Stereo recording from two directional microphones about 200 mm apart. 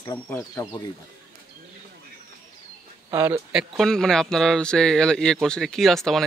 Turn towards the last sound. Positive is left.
turn(degrees=0)  # may be behind; listen again after turning